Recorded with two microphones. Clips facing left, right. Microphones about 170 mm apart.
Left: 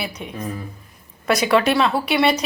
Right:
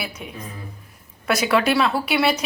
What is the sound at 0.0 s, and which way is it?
Speech, 5° right (ahead or behind).